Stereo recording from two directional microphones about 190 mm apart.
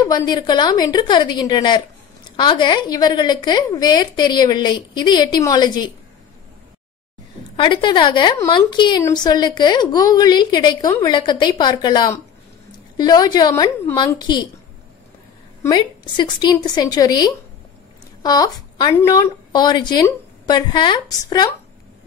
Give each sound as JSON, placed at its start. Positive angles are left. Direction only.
{"t": 0.1, "sound": "a woman's voice", "side_deg": 20}
{"t": 7.5, "sound": "a woman's voice", "side_deg": 25}
{"t": 15.7, "sound": "a woman's voice", "side_deg": 20}